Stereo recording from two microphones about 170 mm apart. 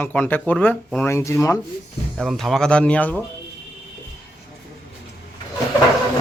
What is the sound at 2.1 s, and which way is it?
Speech, centre (ahead or behind).